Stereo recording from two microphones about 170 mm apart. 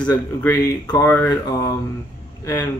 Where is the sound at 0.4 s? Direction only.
10° left (ahead or behind).